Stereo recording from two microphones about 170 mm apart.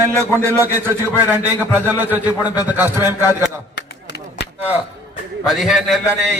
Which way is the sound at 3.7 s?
75° left (ahead or behind).